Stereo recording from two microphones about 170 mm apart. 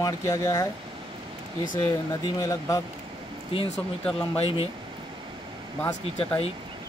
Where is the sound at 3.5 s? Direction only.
35° left (ahead or behind).